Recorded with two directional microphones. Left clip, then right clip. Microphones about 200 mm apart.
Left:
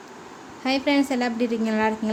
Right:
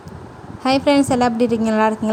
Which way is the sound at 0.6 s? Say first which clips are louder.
Right 7 dB; 25° right (ahead or behind).